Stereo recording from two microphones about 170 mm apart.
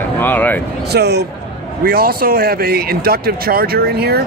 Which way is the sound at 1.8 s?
60° right (ahead or behind).